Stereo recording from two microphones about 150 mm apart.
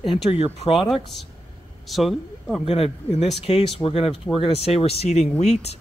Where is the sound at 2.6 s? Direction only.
45° left (ahead or behind).